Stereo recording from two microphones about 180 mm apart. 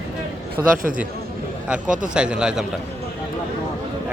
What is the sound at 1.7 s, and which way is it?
Speech, 5° right (ahead or behind).